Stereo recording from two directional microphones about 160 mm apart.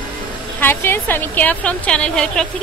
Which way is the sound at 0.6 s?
15° left (ahead or behind).